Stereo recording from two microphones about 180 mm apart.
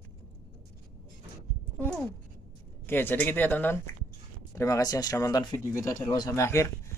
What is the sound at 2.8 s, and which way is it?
Speech, 10° left (ahead or behind).